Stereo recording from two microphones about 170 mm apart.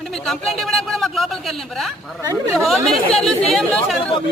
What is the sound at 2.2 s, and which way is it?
Speech, 20° right (ahead or behind).